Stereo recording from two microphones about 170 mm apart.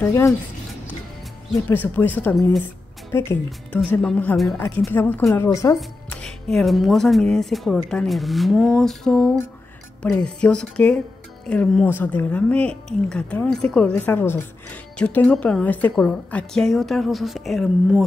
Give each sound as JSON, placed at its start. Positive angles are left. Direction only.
{"t": 0.0, "sound": "a woman's voice", "side_deg": 15}
{"t": 1.5, "sound": "a woman's voice", "side_deg": 10}
{"t": 2.6, "sound": "a sound", "side_deg": 15}
{"t": 3.4, "sound": "a woman's voice", "side_deg": 5}
{"t": 5.8, "sound": "a woman's voice", "side_deg": 5}